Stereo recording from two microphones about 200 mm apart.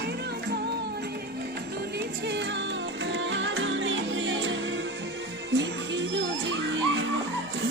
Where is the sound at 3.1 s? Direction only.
65° right (ahead or behind).